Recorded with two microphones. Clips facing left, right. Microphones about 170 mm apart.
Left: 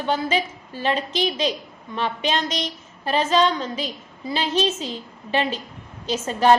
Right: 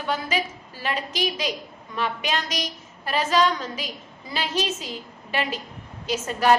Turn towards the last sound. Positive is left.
turn(degrees=30)  # may be behind; listen again after turning